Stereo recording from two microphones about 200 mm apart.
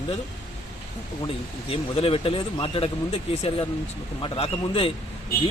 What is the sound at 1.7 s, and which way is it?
Speech, 30° left (ahead or behind).